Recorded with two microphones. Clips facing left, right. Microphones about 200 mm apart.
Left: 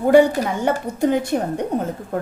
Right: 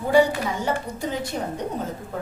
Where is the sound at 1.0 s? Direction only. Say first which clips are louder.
Left 12 dB; 55° left (ahead or behind).